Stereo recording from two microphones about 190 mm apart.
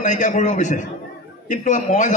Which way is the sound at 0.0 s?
40° left (ahead or behind).